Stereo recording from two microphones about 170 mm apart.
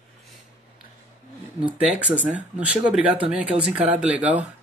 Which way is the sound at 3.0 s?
35° right (ahead or behind).